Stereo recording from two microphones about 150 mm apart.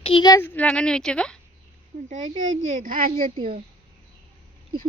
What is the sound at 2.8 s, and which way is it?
Speech, 70° right (ahead or behind).